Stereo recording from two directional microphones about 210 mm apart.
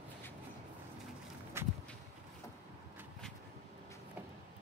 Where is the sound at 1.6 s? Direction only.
10° right (ahead or behind).